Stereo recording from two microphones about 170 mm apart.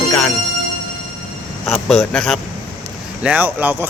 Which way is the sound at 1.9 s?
Centre (ahead or behind).